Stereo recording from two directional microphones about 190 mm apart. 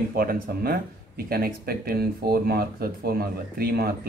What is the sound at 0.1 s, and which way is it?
Speech, 50° right (ahead or behind).